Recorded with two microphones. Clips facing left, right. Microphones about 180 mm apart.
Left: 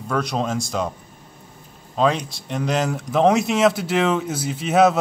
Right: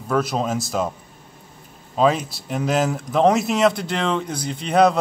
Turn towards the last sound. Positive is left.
turn(degrees=5)  # may be behind; listen again after turning